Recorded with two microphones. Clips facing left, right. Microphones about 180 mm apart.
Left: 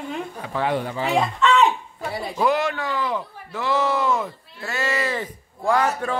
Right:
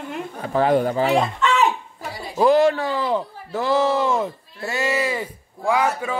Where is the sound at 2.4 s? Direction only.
35° right (ahead or behind).